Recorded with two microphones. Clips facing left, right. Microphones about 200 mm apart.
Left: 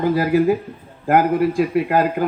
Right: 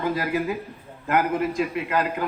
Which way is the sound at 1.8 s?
40° left (ahead or behind).